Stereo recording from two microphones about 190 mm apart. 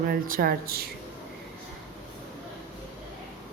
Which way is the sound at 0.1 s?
50° right (ahead or behind).